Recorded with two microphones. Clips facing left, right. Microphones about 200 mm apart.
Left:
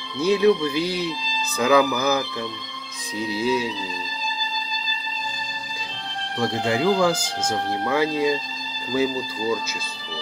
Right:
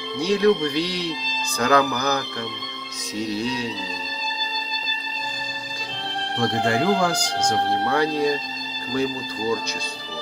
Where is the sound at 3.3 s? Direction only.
5° left (ahead or behind).